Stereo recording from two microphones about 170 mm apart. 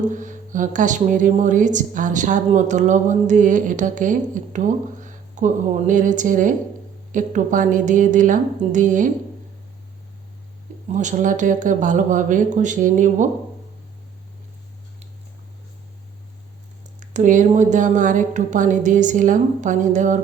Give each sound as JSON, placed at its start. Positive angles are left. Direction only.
{"t": 0.1, "sound": "a woman's voice", "side_deg": -50}
{"t": 10.9, "sound": "a woman's voice", "side_deg": -45}
{"t": 17.0, "sound": "a woman's voice", "side_deg": -45}